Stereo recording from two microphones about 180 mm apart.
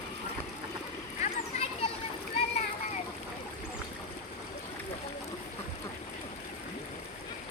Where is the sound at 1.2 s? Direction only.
35° left (ahead or behind).